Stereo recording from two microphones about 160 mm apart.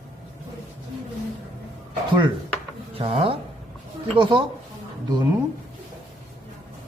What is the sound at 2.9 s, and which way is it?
A woman's voice, 35° right (ahead or behind).